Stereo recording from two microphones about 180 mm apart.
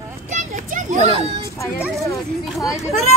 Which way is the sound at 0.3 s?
45° right (ahead or behind).